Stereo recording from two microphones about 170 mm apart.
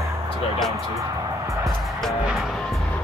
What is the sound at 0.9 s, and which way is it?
Music, 20° right (ahead or behind).